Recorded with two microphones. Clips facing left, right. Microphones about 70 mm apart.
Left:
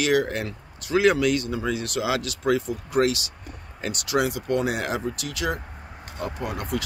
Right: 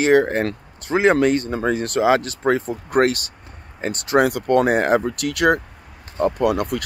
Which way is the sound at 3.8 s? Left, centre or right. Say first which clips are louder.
Right 7 dB; right.